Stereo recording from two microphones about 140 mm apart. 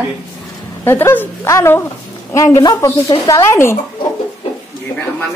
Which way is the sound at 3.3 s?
20° left (ahead or behind).